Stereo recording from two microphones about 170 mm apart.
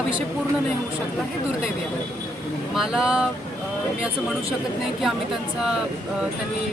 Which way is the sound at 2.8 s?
5° right (ahead or behind).